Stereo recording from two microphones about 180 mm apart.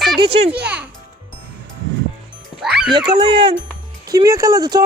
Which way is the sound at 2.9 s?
25° right (ahead or behind).